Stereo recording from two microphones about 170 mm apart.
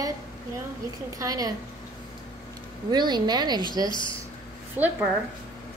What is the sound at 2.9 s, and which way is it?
Speech, 25° right (ahead or behind).